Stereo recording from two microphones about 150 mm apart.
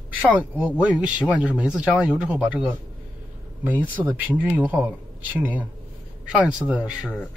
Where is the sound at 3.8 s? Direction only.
10° right (ahead or behind).